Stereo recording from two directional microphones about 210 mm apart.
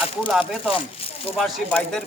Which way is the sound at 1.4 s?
Centre (ahead or behind).